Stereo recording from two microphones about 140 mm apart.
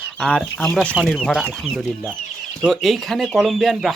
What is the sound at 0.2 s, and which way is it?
Speech, 5° left (ahead or behind).